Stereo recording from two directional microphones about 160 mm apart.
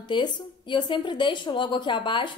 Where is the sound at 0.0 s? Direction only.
30° left (ahead or behind).